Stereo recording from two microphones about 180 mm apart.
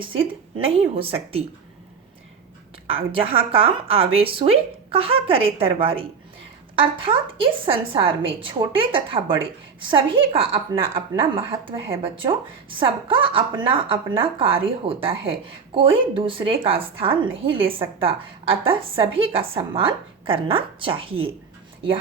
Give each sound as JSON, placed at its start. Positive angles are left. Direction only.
{"t": 0.0, "sound": "a woman's voice", "side_deg": -30}
{"t": 2.8, "sound": "a woman's voice", "side_deg": -30}